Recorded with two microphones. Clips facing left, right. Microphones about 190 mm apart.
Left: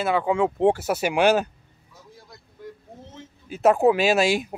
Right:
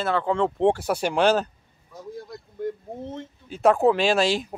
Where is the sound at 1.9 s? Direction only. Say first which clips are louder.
Right 12 dB; 55° right (ahead or behind).